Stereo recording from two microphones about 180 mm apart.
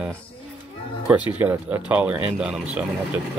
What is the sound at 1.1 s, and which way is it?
Speech, 10° right (ahead or behind).